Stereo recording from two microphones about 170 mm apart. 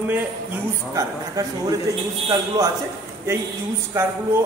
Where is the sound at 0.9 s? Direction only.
20° right (ahead or behind).